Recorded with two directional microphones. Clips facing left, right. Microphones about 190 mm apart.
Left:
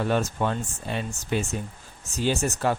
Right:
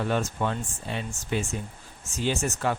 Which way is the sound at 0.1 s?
45° left (ahead or behind).